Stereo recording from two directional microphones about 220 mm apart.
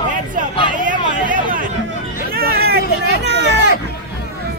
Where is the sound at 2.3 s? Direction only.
45° right (ahead or behind).